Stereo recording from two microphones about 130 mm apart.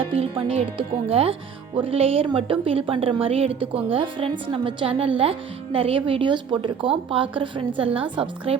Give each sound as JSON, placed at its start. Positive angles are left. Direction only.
{"t": 0.0, "sound": "a woman's voice", "side_deg": -45}